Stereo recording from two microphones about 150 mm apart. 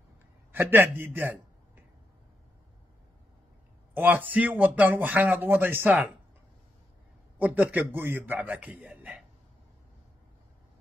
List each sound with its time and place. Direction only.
0.5 s a sound: 15° right (ahead or behind)
3.9 s speech: 10° right (ahead or behind)
7.3 s speech: 10° right (ahead or behind)